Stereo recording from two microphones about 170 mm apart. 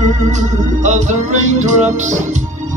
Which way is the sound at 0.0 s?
45° right (ahead or behind).